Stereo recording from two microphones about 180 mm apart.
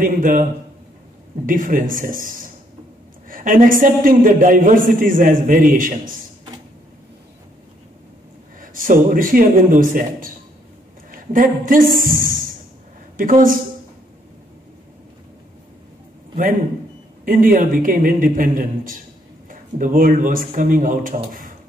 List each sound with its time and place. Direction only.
0.0 s a man's voice: 45° right (ahead or behind)
8.5 s a man's voice: 50° right (ahead or behind)
12.0 s a sound: 50° right (ahead or behind)
13.2 s a man's voice: 50° right (ahead or behind)
17.2 s a sound: 50° right (ahead or behind)
17.6 s a man's voice: 50° right (ahead or behind)